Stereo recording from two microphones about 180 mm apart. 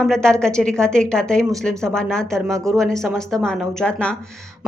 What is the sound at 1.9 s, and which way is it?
A woman's voice, 5° left (ahead or behind).